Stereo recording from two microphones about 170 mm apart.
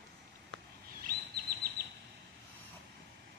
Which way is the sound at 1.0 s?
60° right (ahead or behind).